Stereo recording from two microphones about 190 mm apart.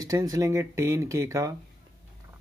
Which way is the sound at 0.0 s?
20° right (ahead or behind).